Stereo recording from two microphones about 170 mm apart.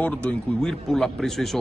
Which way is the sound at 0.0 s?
5° left (ahead or behind).